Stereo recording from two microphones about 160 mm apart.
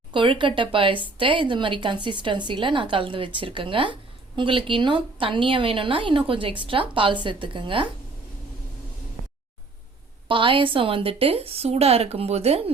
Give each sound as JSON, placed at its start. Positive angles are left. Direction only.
{"t": 0.1, "sound": "speech", "side_deg": -30}
{"t": 10.2, "sound": "speech", "side_deg": -30}